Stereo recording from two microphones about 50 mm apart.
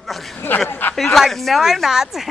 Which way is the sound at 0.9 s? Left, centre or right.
Centre.